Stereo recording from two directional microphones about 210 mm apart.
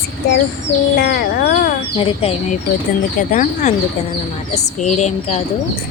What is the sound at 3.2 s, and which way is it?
Speech, 40° left (ahead or behind).